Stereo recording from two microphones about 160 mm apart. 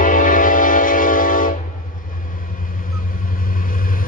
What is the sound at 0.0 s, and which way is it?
Music, 55° left (ahead or behind).